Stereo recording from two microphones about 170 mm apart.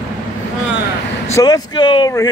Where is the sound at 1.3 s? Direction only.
20° left (ahead or behind).